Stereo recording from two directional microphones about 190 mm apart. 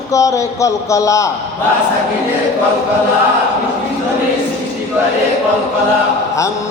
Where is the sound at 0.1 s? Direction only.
15° left (ahead or behind).